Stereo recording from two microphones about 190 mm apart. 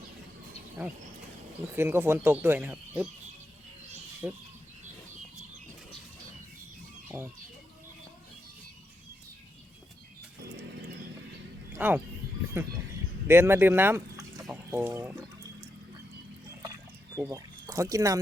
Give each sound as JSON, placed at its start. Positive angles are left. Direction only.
{"t": 1.7, "sound": "speech", "side_deg": -10}
{"t": 4.2, "sound": "speech", "side_deg": -5}
{"t": 7.1, "sound": "speech", "side_deg": -10}
{"t": 11.8, "sound": "speech", "side_deg": -10}
{"t": 13.2, "sound": "speech", "side_deg": -15}
{"t": 17.2, "sound": "speech", "side_deg": -15}